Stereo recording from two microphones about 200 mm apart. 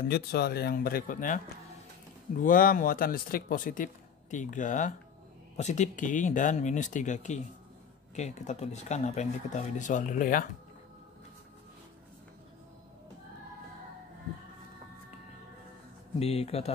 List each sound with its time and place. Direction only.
0.0 s speech: 50° left (ahead or behind)
2.4 s speech: 45° left (ahead or behind)
16.2 s speech: 30° left (ahead or behind)